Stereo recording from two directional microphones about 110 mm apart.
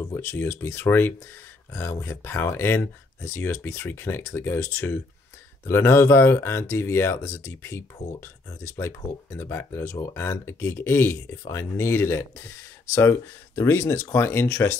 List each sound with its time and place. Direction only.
0.0 s speech: 25° left (ahead or behind)